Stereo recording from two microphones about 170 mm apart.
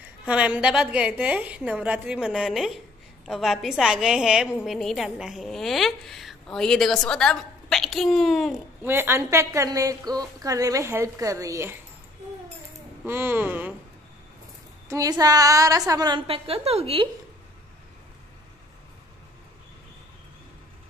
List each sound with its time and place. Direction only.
0.2 s a woman's voice: 5° right (ahead or behind)
8.8 s a woman's voice: 15° right (ahead or behind)
13.0 s a woman's voice: 15° right (ahead or behind)
14.9 s a woman's voice: 20° right (ahead or behind)